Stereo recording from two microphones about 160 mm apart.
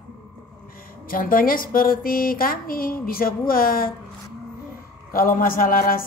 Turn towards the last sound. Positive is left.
turn(degrees=60)  # may be behind; listen again after turning